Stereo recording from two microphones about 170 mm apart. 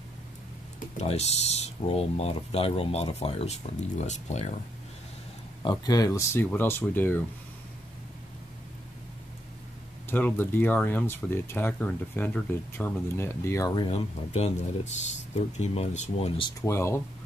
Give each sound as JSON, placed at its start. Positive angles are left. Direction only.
{"t": 0.7, "sound": "speech", "side_deg": 40}
{"t": 5.6, "sound": "speech", "side_deg": 25}
{"t": 10.0, "sound": "speech", "side_deg": 10}
{"t": 16.6, "sound": "speech", "side_deg": 15}